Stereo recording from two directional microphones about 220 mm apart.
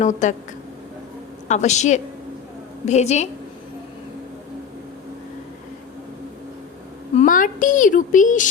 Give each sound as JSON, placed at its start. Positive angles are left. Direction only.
{"t": 0.0, "sound": "a woman's voice", "side_deg": 35}
{"t": 1.5, "sound": "a woman's voice", "side_deg": 30}
{"t": 7.2, "sound": "a woman's voice", "side_deg": 35}